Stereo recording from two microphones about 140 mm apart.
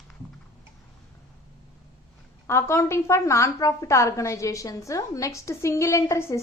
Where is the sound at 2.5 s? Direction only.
20° left (ahead or behind).